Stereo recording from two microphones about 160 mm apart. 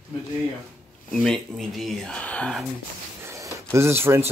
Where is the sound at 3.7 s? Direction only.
15° right (ahead or behind).